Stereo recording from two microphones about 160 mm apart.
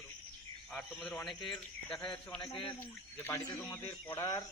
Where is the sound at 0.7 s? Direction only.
5° left (ahead or behind).